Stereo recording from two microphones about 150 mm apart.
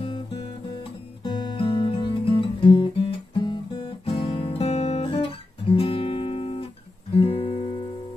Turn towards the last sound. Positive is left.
turn(degrees=40)  # may be behind; listen again after turning